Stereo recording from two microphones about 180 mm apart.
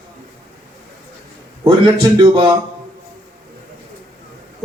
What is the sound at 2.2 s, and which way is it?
Speech, 25° right (ahead or behind).